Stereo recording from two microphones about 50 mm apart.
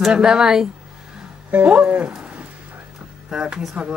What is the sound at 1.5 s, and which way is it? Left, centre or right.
Speech, right.